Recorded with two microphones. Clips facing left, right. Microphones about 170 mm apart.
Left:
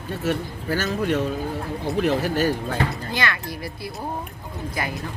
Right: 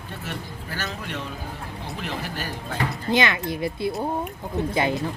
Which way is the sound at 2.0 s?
40° left (ahead or behind).